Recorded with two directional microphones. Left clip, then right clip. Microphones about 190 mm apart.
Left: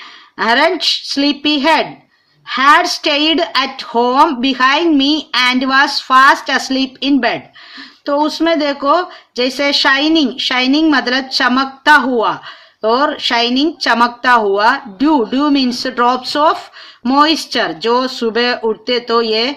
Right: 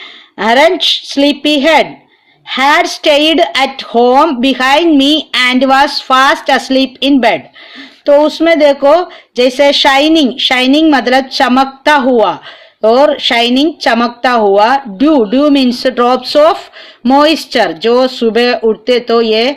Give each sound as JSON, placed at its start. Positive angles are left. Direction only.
{"t": 0.3, "sound": "speech", "side_deg": -15}